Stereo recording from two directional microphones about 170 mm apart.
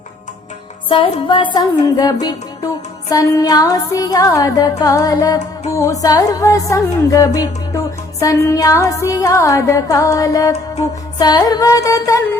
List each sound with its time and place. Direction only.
0.9 s music: 30° left (ahead or behind)